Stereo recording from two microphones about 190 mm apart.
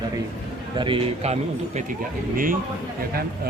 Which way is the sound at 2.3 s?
45° right (ahead or behind).